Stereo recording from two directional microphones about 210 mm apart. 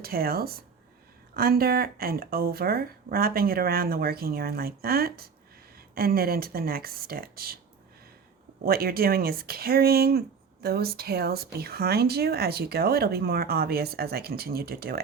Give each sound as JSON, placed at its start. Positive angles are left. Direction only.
{"t": 0.0, "sound": "speech", "side_deg": -45}
{"t": 8.6, "sound": "speech", "side_deg": -45}